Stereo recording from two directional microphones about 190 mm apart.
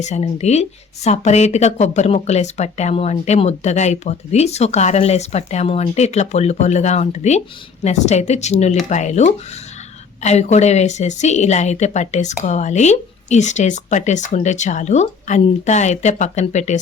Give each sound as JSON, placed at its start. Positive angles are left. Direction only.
{"t": 0.0, "sound": "speech", "side_deg": 35}